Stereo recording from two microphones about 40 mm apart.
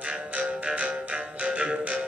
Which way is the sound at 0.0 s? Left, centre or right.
Right.